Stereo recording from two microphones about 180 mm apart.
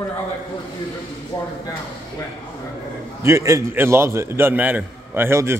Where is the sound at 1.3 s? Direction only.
25° left (ahead or behind).